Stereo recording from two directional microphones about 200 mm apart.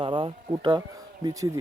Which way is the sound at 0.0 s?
25° right (ahead or behind).